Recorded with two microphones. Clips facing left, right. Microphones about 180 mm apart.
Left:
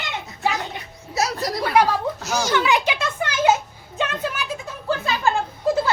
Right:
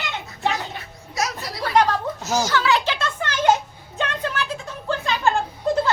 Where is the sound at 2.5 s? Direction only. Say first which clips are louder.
Left 1 dB; 15° left (ahead or behind).